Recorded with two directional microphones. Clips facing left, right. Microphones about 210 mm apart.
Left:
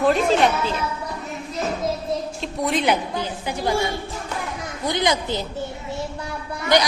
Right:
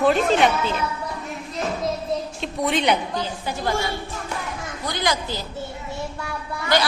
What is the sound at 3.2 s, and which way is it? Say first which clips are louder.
Speech: left 1 dB; 15° left (ahead or behind).